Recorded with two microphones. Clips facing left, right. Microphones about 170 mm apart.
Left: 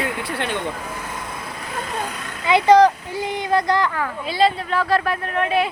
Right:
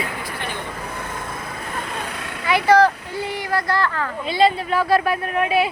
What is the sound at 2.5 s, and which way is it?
Speech, 20° left (ahead or behind).